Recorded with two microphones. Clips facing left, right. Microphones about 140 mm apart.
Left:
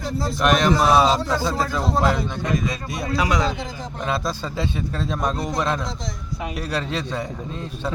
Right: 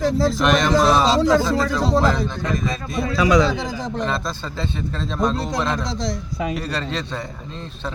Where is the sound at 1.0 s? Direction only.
90° right.